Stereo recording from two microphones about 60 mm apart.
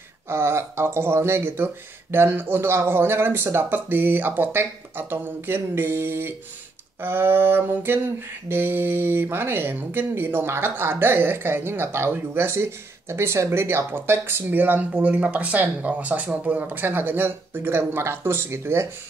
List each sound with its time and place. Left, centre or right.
0.3 s speech: right